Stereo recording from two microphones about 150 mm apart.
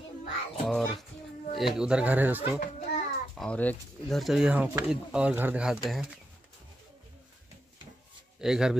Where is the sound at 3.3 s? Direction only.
5° left (ahead or behind).